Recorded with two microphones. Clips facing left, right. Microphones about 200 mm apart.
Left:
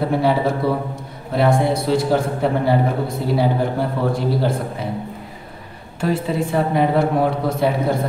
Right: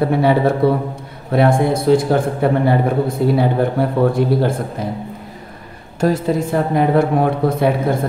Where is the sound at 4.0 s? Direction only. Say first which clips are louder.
Right 6 dB; 55° right (ahead or behind).